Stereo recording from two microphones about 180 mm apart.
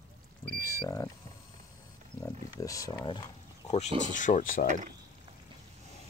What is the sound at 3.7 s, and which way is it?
Speech, 40° left (ahead or behind).